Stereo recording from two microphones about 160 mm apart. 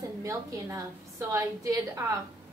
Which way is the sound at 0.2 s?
20° right (ahead or behind).